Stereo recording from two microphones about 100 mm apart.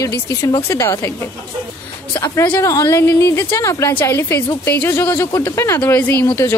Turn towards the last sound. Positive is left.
turn(degrees=25)  # may be behind; listen again after turning